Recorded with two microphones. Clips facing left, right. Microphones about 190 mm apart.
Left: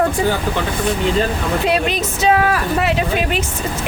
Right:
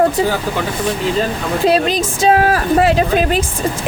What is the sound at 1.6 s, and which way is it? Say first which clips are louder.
A woman's voice: right 7 dB; 35° right (ahead or behind).